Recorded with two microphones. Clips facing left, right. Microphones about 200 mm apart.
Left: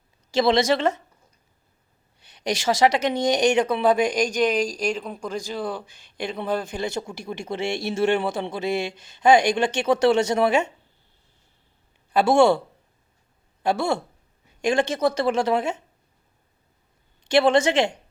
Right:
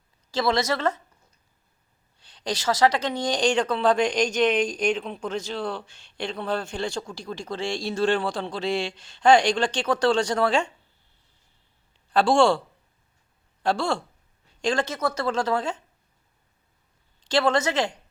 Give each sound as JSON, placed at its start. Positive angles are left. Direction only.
{"t": 0.3, "sound": "speech", "side_deg": 20}
{"t": 2.2, "sound": "a woman's voice", "side_deg": 10}
{"t": 6.1, "sound": "a woman's voice", "side_deg": 15}
{"t": 12.1, "sound": "speech", "side_deg": 20}
{"t": 13.6, "sound": "speech", "side_deg": 15}
{"t": 17.2, "sound": "speech", "side_deg": 25}